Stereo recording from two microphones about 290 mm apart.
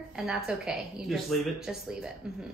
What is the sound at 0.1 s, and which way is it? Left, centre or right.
Speech, centre.